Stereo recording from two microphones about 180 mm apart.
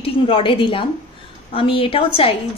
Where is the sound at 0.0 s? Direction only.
30° left (ahead or behind).